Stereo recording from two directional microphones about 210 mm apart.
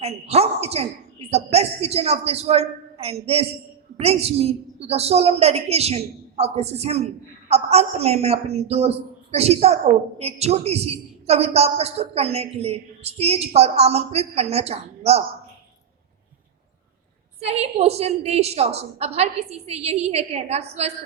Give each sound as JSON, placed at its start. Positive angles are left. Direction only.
{"t": 0.0, "sound": "a woman's voice", "side_deg": -30}
{"t": 17.4, "sound": "a woman's voice", "side_deg": -30}